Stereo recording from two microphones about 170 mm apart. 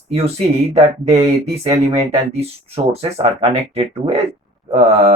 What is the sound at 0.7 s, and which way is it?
Speech, 35° right (ahead or behind).